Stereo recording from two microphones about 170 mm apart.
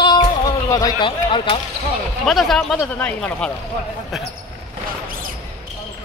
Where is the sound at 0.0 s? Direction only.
25° left (ahead or behind).